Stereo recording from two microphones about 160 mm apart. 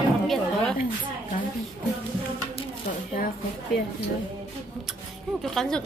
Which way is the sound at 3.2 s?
65° left (ahead or behind).